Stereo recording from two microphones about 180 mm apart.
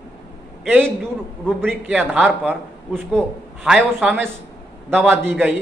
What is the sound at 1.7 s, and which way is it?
Speech, 10° right (ahead or behind).